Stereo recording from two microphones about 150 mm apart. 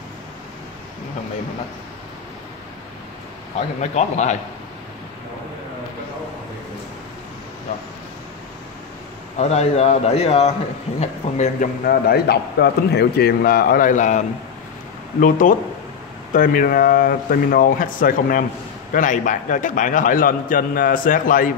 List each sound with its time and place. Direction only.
3.5 s a man's voice: 50° left (ahead or behind)
9.4 s a man's voice: 45° left (ahead or behind)
11.8 s a man's voice: 85° left; by 21.5 s 65° left (ahead or behind)